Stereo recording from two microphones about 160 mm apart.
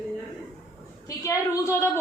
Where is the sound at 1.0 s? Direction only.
20° left (ahead or behind).